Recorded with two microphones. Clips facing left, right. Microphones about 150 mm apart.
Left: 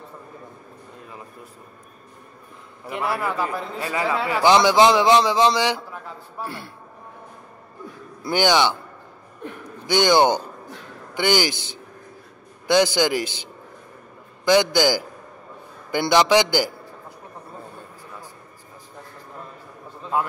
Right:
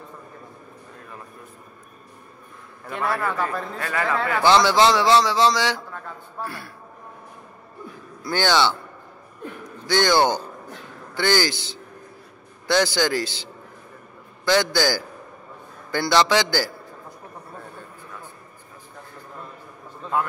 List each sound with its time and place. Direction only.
2.8 s a man's voice: 5° left (ahead or behind); by 6.7 s 25° left (ahead or behind)
8.2 s a man's voice: 15° left (ahead or behind)
9.8 s a man's voice: 15° left (ahead or behind)